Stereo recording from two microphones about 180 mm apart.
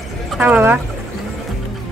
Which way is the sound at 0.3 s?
5° right (ahead or behind).